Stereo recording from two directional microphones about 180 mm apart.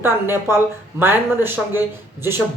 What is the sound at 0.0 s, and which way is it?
Speech, 15° right (ahead or behind).